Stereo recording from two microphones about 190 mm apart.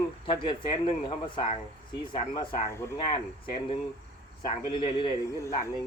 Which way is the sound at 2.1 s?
25° left (ahead or behind).